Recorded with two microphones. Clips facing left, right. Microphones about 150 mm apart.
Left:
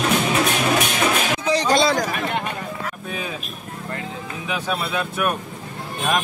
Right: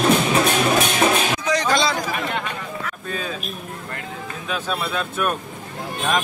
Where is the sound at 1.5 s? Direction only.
35° left (ahead or behind).